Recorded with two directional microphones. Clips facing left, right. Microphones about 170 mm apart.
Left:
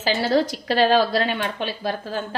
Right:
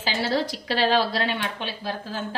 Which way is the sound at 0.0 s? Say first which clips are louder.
Left 5 dB; 45° left (ahead or behind).